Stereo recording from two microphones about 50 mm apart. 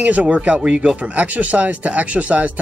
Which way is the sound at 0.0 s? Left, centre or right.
Right.